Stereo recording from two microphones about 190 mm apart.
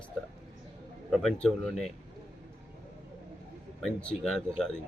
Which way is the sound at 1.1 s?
Centre (ahead or behind).